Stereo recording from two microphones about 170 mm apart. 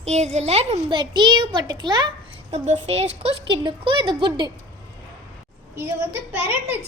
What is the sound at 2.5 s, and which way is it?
A child's voice, 40° right (ahead or behind).